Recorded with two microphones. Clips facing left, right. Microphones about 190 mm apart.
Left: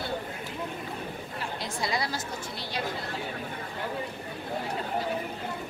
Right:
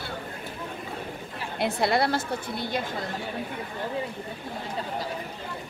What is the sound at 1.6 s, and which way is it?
Speech, 60° right (ahead or behind).